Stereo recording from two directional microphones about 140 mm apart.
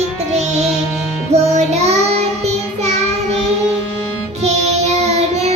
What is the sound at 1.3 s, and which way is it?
Child singing, 55° right (ahead or behind).